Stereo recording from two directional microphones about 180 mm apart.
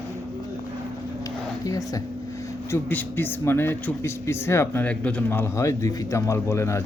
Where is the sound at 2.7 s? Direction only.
10° left (ahead or behind).